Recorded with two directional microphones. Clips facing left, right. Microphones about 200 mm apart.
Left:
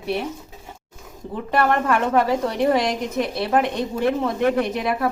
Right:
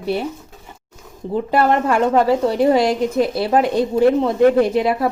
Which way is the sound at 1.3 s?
30° right (ahead or behind).